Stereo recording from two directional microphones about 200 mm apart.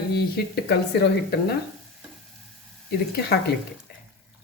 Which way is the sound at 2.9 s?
55° left (ahead or behind).